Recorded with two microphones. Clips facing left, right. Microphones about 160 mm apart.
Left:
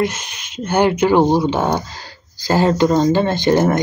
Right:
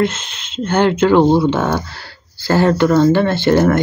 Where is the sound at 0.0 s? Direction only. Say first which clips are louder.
Right 2 dB; 10° left (ahead or behind).